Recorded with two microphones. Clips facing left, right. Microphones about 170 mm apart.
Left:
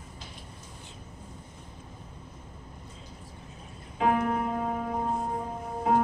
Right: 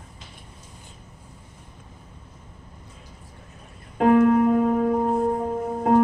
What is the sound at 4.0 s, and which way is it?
Music, 60° right (ahead or behind).